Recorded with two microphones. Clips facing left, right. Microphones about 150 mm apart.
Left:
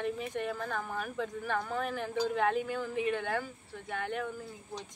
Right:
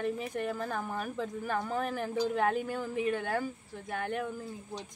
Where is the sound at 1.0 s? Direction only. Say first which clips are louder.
Right 1 dB; 35° right (ahead or behind).